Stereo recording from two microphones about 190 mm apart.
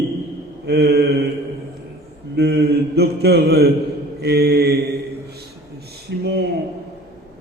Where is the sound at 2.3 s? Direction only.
60° right (ahead or behind).